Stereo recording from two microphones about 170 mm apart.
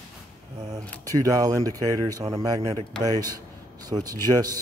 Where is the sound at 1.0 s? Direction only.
20° right (ahead or behind).